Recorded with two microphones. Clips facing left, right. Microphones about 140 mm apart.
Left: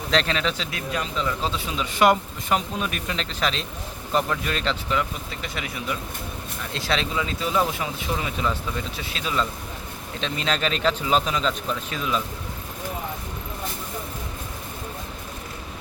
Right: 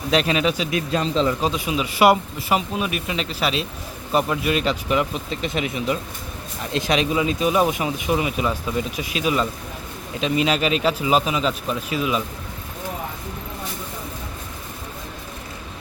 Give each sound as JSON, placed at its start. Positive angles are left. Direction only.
{"t": 0.1, "sound": "speech", "side_deg": -10}
{"t": 0.8, "sound": "speech", "side_deg": -30}
{"t": 1.4, "sound": "speech", "side_deg": -15}